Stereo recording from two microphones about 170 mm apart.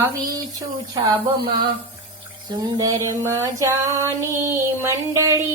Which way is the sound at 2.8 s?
20° right (ahead or behind).